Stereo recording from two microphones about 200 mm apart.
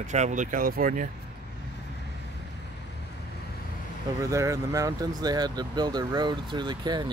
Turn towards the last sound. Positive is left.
turn(degrees=-20)  # may be behind; listen again after turning